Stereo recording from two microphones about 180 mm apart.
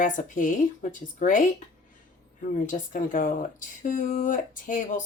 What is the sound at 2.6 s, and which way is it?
Speech, 45° left (ahead or behind).